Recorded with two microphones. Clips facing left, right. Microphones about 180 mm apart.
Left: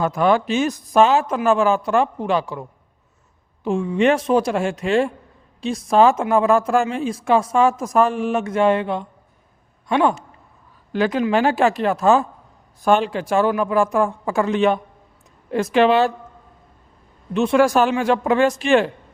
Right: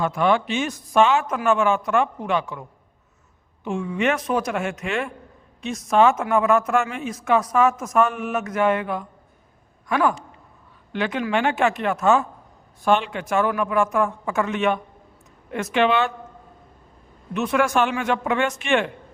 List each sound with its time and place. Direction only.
0.0 s a man's voice: 40° left (ahead or behind)
10.9 s a man's voice: 40° left (ahead or behind)
17.3 s a man's voice: 30° left (ahead or behind)